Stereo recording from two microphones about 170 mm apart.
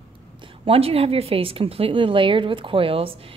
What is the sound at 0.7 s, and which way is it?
A woman's voice, 35° right (ahead or behind).